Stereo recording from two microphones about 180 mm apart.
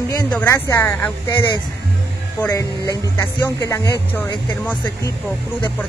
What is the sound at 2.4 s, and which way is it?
Speech, 20° left (ahead or behind).